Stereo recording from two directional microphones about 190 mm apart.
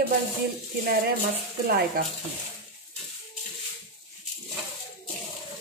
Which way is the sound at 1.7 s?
55° right (ahead or behind).